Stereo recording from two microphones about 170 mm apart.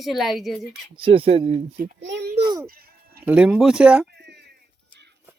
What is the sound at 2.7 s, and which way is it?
Sheep, 60° right (ahead or behind).